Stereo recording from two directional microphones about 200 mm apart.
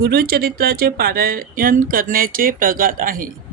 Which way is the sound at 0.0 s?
50° right (ahead or behind).